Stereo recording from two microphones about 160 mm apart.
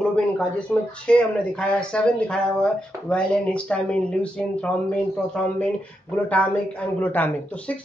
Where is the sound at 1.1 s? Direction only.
5° left (ahead or behind).